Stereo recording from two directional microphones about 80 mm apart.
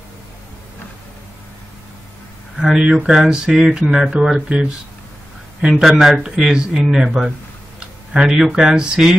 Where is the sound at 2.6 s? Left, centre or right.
Centre.